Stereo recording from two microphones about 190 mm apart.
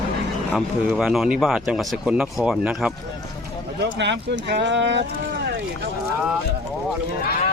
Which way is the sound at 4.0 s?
65° right (ahead or behind).